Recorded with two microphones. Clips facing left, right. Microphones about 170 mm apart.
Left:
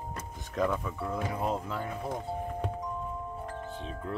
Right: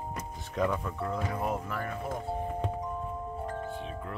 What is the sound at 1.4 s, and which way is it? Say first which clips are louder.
Speech: left 1 dB; 20° left (ahead or behind).